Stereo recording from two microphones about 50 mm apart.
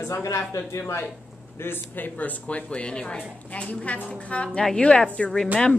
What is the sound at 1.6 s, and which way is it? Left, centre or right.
A woman's voice, left.